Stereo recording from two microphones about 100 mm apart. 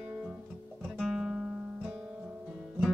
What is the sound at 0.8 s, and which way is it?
Guitar, 5° right (ahead or behind).